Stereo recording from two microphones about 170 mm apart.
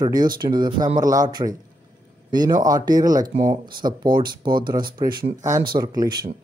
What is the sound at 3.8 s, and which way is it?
Speech, 25° right (ahead or behind).